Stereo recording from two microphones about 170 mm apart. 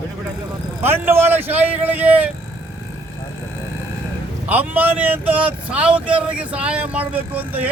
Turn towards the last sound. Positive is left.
turn(degrees=-10)  # may be behind; listen again after turning